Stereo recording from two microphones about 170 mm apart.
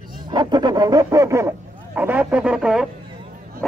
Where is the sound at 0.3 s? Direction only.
25° right (ahead or behind).